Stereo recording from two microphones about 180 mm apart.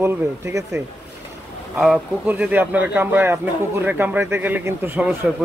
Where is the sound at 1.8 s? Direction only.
5° right (ahead or behind).